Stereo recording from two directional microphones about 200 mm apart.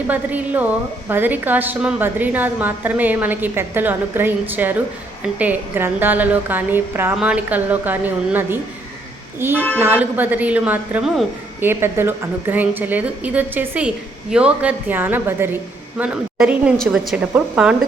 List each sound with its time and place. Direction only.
0.1 s a woman's voice: 10° right (ahead or behind)
11.6 s a woman's voice: 10° right (ahead or behind)